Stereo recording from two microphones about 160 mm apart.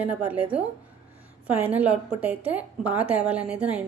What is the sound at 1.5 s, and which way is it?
A woman's voice, 10° right (ahead or behind).